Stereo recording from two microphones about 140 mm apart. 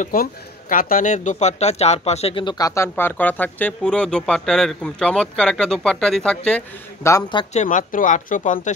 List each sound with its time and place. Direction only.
0.0 s speech: 85° left; by 6.6 s 5° left (ahead or behind)
7.0 s speech: 20° left (ahead or behind)
7.5 s speech: 70° left (ahead or behind)